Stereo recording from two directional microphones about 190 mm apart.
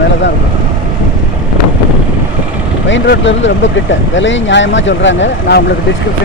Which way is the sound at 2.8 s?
75° left (ahead or behind).